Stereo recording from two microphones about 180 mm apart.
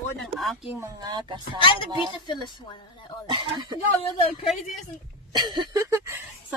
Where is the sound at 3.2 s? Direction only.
25° right (ahead or behind).